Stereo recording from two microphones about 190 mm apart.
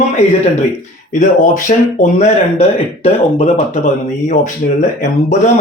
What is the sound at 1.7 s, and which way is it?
Speech, 45° left (ahead or behind).